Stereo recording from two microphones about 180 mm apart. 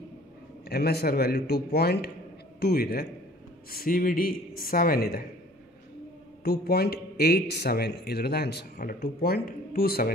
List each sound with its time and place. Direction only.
0.7 s speech: 60° left (ahead or behind)
6.4 s speech: 60° left (ahead or behind)